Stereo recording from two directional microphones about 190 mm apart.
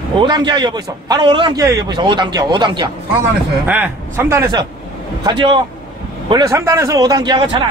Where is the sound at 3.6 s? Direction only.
10° right (ahead or behind).